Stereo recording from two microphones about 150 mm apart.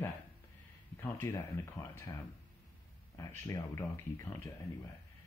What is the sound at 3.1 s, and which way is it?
Speech, 20° left (ahead or behind).